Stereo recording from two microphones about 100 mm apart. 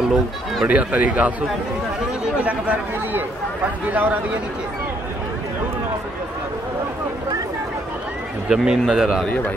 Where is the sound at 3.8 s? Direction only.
20° right (ahead or behind).